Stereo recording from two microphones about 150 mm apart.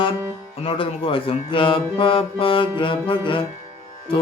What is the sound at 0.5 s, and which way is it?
Music, 35° left (ahead or behind).